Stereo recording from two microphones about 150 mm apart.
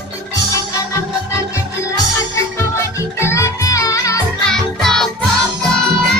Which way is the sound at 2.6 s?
15° left (ahead or behind).